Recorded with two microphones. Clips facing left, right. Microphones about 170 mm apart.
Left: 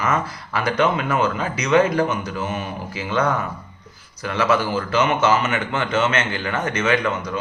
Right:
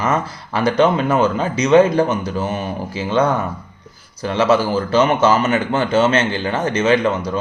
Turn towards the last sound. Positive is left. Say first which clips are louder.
# right 5 dB
turn(degrees=-30)  # may be behind; listen again after turning